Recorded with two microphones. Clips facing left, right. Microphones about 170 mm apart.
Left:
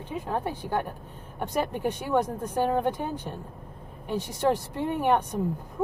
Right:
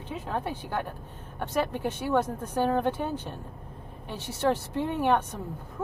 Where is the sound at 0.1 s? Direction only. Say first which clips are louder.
Left 2 dB; 10° left (ahead or behind).